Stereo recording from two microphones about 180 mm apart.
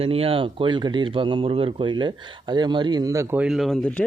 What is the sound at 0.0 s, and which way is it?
Speech, 30° right (ahead or behind).